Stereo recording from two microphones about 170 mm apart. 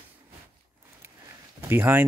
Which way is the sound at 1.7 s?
10° right (ahead or behind).